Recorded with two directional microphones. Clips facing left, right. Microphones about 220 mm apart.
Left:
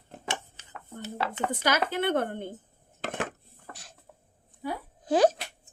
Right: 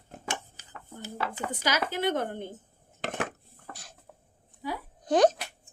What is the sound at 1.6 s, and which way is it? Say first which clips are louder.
Speech: left 1 dB; 55° left (ahead or behind).